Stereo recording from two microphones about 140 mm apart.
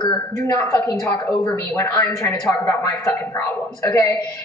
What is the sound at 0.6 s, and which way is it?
A woman's voice, 15° left (ahead or behind).